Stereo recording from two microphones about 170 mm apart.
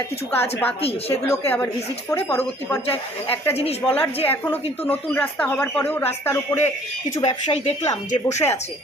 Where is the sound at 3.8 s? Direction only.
10° left (ahead or behind).